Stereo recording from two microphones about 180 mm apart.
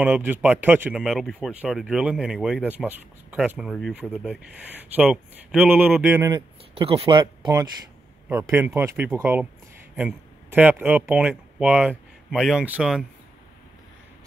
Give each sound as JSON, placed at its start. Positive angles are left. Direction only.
{"t": 0.0, "sound": "speech", "side_deg": -10}
{"t": 6.7, "sound": "speech", "side_deg": -30}
{"t": 8.3, "sound": "speech", "side_deg": -15}